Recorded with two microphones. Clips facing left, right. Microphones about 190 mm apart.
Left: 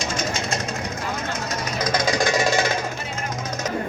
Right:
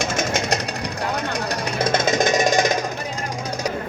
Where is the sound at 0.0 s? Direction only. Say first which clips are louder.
Right 4 dB; 70° right (ahead or behind).